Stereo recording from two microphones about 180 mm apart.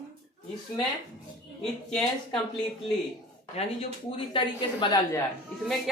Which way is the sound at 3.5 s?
35° left (ahead or behind).